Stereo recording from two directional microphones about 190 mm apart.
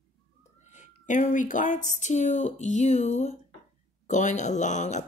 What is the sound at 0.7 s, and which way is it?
Speech, 40° left (ahead or behind).